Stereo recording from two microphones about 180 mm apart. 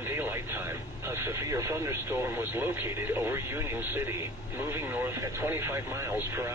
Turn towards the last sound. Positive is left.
turn(degrees=-15)  # may be behind; listen again after turning